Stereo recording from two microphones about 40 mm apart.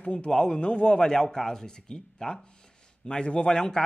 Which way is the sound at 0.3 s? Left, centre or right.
Centre.